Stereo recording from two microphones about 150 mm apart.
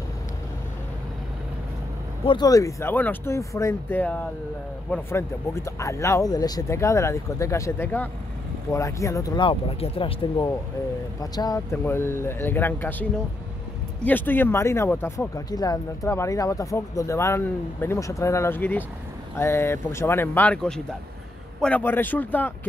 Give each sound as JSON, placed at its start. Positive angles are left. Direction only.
{"t": 2.2, "sound": "speech", "side_deg": 30}
{"t": 11.1, "sound": "speech", "side_deg": 25}
{"t": 11.7, "sound": "speech", "side_deg": 15}
{"t": 14.0, "sound": "speech", "side_deg": 10}